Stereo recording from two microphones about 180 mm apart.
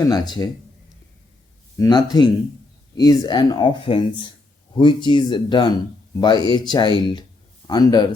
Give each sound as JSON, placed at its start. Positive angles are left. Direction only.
{"t": 0.0, "sound": "speech", "side_deg": 20}
{"t": 1.8, "sound": "speech", "side_deg": 20}